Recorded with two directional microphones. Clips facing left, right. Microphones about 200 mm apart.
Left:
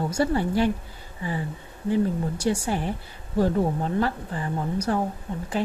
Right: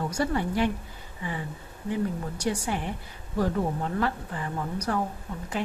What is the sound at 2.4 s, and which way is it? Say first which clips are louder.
Speech: left 2 dB; 30° left (ahead or behind).